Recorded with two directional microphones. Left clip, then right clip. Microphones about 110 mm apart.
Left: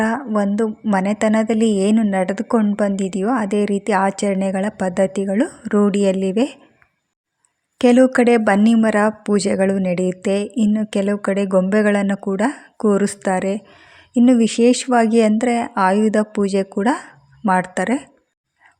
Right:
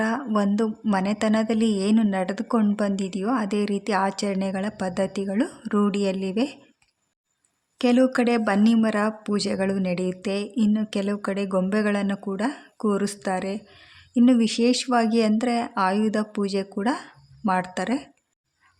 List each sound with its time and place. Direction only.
0.0 s a sound: 35° left (ahead or behind)
0.3 s a woman's voice: 30° left (ahead or behind)
7.8 s a woman's voice: 45° left (ahead or behind)